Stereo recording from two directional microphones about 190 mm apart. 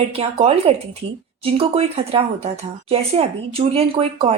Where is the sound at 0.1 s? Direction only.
30° right (ahead or behind).